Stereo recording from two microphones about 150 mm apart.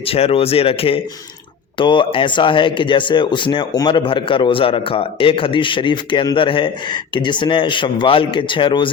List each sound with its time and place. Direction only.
0.0 s speech: 40° left (ahead or behind)